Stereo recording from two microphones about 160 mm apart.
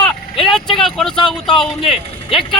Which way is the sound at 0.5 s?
Centre (ahead or behind).